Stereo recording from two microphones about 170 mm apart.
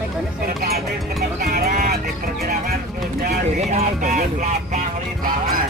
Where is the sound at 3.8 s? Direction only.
50° right (ahead or behind).